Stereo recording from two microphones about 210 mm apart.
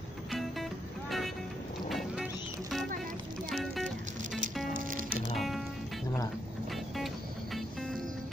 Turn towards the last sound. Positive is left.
turn(degrees=0)  # may be behind; listen again after turning